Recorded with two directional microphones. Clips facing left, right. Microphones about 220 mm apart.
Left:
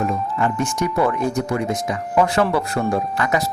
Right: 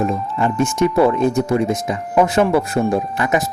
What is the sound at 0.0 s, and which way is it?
Speech, 25° right (ahead or behind).